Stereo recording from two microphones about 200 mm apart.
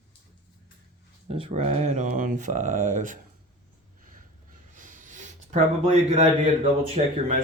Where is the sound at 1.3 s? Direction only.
30° right (ahead or behind).